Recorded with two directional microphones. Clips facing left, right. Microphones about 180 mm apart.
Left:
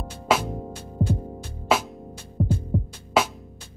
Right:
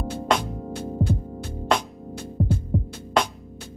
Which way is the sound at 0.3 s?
5° left (ahead or behind).